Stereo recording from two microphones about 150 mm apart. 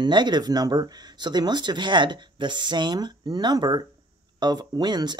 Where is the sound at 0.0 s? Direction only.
30° right (ahead or behind).